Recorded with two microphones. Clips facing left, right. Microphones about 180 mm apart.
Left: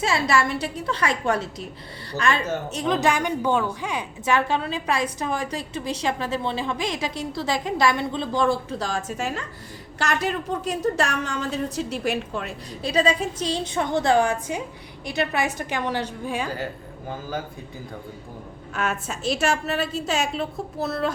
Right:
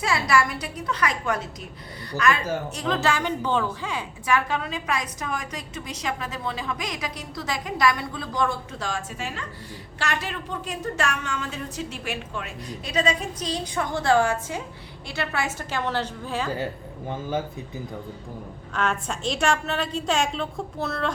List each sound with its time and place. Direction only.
0.0 s a woman's voice: 25° left (ahead or behind)
4.4 s a woman's voice: 30° left (ahead or behind)
18.7 s a woman's voice: 5° left (ahead or behind)